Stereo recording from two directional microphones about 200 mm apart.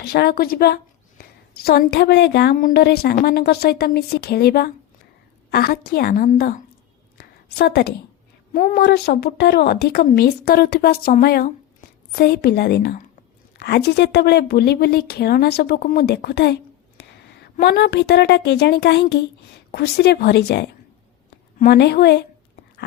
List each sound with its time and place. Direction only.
0.0 s a woman's voice: 50° left (ahead or behind)
7.2 s a sound: 55° left (ahead or behind)
8.5 s a woman's voice: 45° left (ahead or behind)